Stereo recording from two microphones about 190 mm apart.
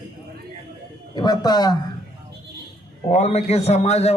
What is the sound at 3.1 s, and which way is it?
A man's voice, 35° left (ahead or behind).